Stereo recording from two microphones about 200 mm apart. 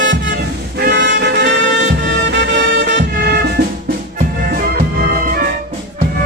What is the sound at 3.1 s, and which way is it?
Music, 45° right (ahead or behind).